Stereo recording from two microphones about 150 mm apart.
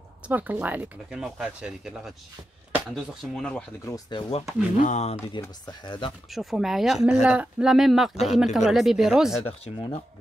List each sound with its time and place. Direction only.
0.3 s speech: 10° right (ahead or behind)
3.8 s speech: 25° left (ahead or behind)
4.7 s speech: 55° left (ahead or behind)
5.4 s speech: 30° left (ahead or behind)
6.3 s speech: centre (ahead or behind)
9.4 s speech: 35° left (ahead or behind)